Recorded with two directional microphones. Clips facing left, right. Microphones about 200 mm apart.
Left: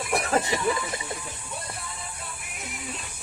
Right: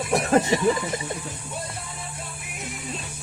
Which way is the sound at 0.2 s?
20° right (ahead or behind).